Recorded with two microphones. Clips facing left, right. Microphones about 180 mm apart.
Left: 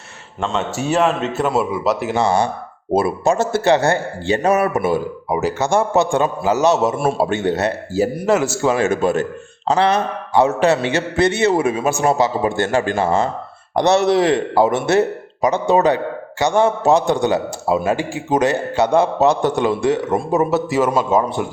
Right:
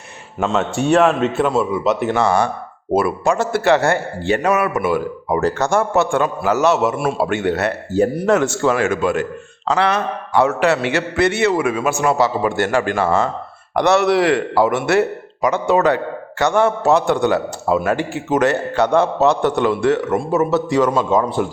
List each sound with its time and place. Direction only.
0.3 s a man's voice: 5° right (ahead or behind)
2.1 s a man's voice: 15° left (ahead or behind)
5.3 s a man's voice: 5° left (ahead or behind)
8.2 s a man's voice: 5° left (ahead or behind)
8.7 s a man's voice: 25° left (ahead or behind); by 21.2 s 10° left (ahead or behind)